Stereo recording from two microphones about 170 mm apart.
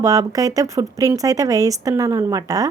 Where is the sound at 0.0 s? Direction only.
20° right (ahead or behind).